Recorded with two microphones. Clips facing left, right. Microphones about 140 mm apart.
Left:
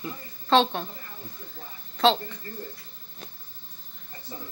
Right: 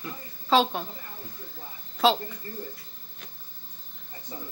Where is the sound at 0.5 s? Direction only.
5° right (ahead or behind).